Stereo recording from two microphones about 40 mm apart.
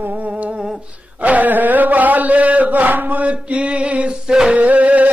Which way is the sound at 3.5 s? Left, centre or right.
Right.